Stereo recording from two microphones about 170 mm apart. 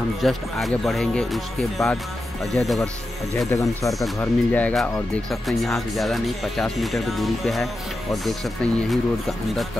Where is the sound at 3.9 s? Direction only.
5° left (ahead or behind).